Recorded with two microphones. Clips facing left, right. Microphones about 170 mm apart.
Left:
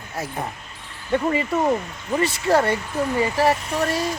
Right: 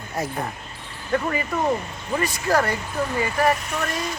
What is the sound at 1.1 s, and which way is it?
Speech, 25° left (ahead or behind).